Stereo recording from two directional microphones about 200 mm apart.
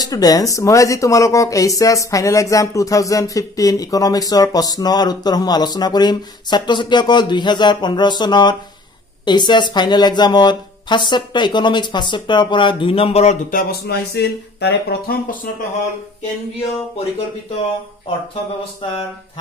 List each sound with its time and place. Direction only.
0.0 s speech: 20° left (ahead or behind); by 15.1 s 55° left (ahead or behind)